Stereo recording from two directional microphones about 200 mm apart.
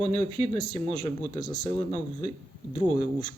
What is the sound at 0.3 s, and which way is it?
Speech, 25° right (ahead or behind).